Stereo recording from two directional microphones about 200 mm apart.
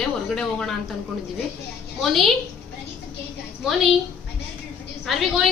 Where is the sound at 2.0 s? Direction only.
Centre (ahead or behind).